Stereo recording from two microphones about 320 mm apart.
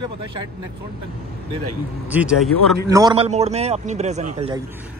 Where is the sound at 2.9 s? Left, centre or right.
Centre.